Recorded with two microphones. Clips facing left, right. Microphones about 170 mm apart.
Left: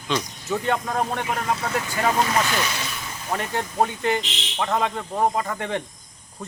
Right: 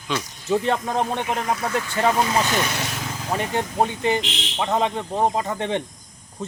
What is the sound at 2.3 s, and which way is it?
Speech, 20° right (ahead or behind).